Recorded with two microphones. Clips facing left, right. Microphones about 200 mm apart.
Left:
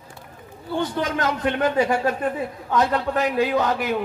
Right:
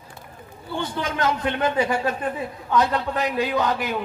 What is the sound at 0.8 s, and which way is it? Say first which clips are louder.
A man's voice: left 2 dB; 45° left (ahead or behind).